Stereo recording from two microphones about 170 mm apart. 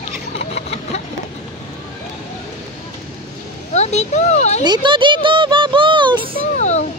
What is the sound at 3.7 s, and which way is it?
Speech, 40° left (ahead or behind).